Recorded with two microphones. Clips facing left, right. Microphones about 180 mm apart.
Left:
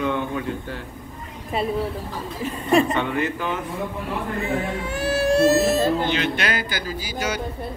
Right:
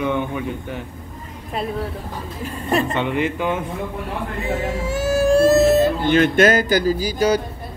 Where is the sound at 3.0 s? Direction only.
20° right (ahead or behind).